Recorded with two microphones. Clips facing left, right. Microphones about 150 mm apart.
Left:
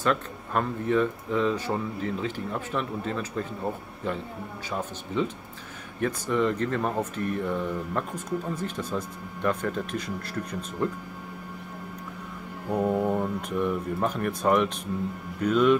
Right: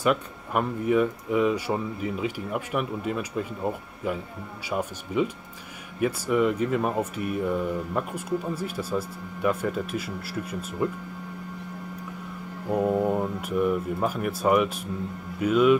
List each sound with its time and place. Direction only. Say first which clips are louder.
0.0 s speech: right 2 dB; 10° right (ahead or behind)
12.6 s speech: right 1 dB; 5° right (ahead or behind)